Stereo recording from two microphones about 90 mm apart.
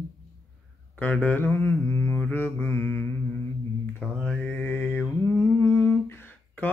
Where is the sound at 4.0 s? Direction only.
10° right (ahead or behind).